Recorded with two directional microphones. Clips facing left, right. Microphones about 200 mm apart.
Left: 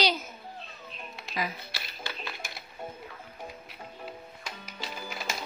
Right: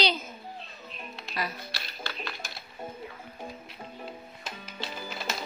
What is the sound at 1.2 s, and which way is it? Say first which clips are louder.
Music: left 1 dB; 10° left (ahead or behind).